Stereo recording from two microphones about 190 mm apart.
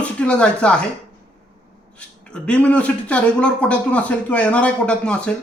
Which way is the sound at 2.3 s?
5° left (ahead or behind).